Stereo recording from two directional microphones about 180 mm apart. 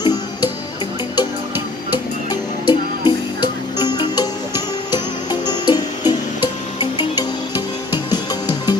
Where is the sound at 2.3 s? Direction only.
25° left (ahead or behind).